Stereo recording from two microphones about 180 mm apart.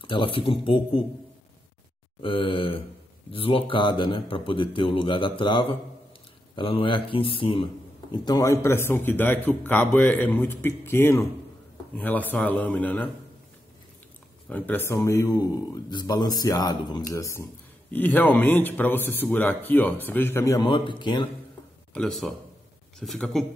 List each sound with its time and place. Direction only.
0.0 s speech: 30° left (ahead or behind)
2.2 s speech: 30° left (ahead or behind); by 13.1 s 10° left (ahead or behind)
14.5 s speech: 10° left (ahead or behind)
21.9 s speech: 5° left (ahead or behind)